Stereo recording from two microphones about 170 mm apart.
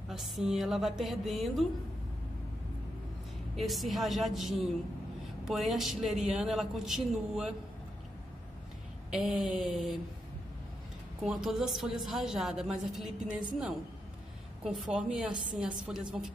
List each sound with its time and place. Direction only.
0.1 s a woman's voice: centre (ahead or behind)
3.5 s a woman's voice: centre (ahead or behind)
9.1 s a woman's voice: 5° right (ahead or behind)
11.2 s a woman's voice: 5° right (ahead or behind)
14.6 s a woman's voice: centre (ahead or behind)